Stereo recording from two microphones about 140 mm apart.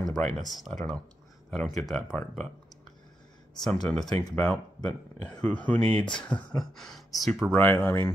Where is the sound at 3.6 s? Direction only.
5° left (ahead or behind).